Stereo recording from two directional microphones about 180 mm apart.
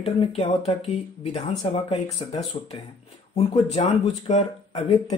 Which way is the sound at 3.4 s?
35° left (ahead or behind).